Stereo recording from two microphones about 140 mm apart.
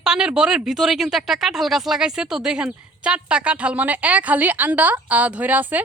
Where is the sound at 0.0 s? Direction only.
5° right (ahead or behind).